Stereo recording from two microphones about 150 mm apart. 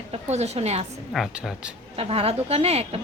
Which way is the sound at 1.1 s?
5° right (ahead or behind).